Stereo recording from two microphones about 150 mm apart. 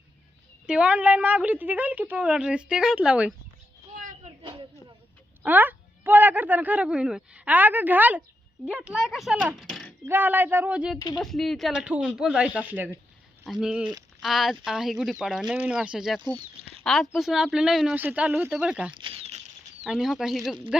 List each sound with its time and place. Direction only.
0.7 s speech: 5° right (ahead or behind)
3.9 s a sound: 55° right (ahead or behind)
5.5 s speech: 10° right (ahead or behind)
9.6 s a sound: centre (ahead or behind)
10.1 s speech: 10° right (ahead or behind)
18.9 s patter: 35° right (ahead or behind)
19.8 s speech: centre (ahead or behind)